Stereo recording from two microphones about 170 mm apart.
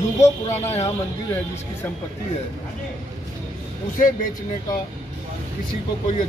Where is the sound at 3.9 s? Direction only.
50° left (ahead or behind).